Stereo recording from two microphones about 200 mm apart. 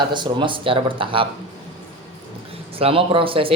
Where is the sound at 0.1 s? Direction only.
25° right (ahead or behind).